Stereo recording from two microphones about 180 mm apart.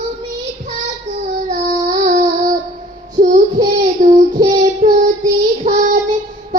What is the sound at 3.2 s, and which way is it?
Child singing, 40° right (ahead or behind).